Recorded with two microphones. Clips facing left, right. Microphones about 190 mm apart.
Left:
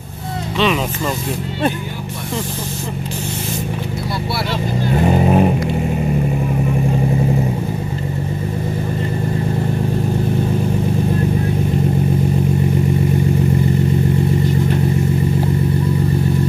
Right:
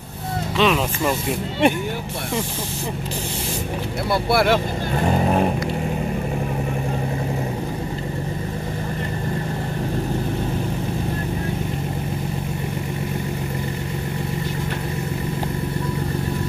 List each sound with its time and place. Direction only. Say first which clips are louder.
4.3 s speech: right 8 dB; 50° right (ahead or behind)
5.0 s vehicle: left 4 dB; 10° left (ahead or behind)